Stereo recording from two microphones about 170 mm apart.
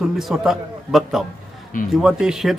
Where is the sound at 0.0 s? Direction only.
Centre (ahead or behind).